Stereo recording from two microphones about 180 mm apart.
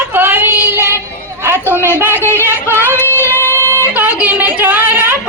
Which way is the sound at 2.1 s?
15° left (ahead or behind).